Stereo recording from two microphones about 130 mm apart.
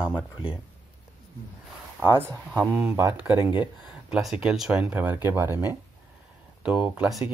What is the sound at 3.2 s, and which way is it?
Speech, 20° right (ahead or behind).